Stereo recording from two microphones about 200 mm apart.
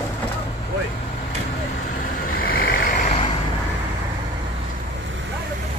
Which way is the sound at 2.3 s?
50° left (ahead or behind).